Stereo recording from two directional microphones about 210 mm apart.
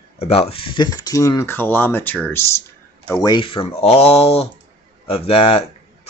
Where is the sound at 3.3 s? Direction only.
25° left (ahead or behind).